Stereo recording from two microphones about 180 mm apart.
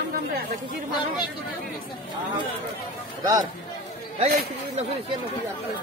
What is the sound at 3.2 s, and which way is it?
Speech, 20° right (ahead or behind).